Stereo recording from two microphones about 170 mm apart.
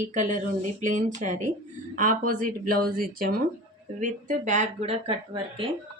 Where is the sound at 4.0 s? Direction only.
45° right (ahead or behind).